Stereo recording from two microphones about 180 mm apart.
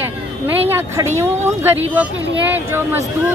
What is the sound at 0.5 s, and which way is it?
A woman's voice, 10° right (ahead or behind).